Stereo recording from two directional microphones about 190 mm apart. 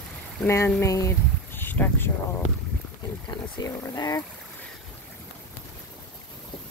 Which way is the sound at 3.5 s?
20° left (ahead or behind).